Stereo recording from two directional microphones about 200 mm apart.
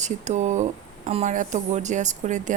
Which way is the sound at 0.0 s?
35° right (ahead or behind).